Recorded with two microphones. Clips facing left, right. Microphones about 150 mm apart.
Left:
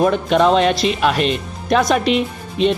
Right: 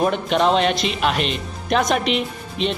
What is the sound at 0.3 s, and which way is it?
A woman's voice, 40° left (ahead or behind).